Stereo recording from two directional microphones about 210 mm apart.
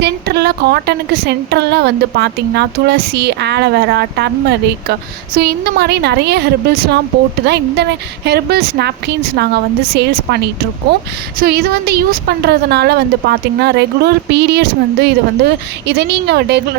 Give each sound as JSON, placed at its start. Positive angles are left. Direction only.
{"t": 0.0, "sound": "a woman's voice", "side_deg": -50}